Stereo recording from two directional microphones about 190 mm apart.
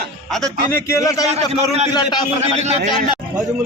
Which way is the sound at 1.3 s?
35° right (ahead or behind).